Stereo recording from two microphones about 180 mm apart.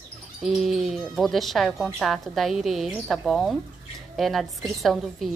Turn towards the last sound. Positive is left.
turn(degrees=0)  # may be behind; listen again after turning